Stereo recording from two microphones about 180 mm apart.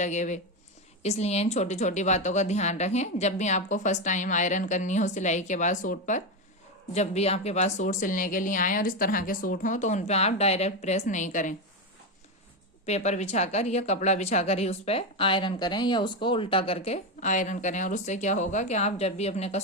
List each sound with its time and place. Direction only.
0.0 s speech: 40° left (ahead or behind)
12.8 s speech: 40° left (ahead or behind)